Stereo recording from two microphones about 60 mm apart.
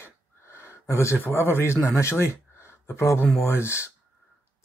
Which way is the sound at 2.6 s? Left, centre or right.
Left.